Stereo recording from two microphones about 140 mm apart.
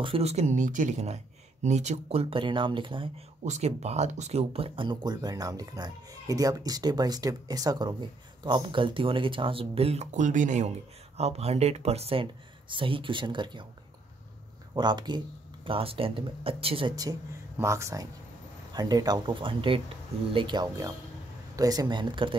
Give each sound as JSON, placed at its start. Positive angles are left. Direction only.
{"t": 0.0, "sound": "speech", "side_deg": -45}
{"t": 3.4, "sound": "speech", "side_deg": -50}
{"t": 11.1, "sound": "speech", "side_deg": -50}
{"t": 14.7, "sound": "speech", "side_deg": -30}
{"t": 16.9, "sound": "speech", "side_deg": -25}